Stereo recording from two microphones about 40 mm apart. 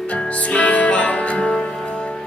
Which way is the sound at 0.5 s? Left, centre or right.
Left.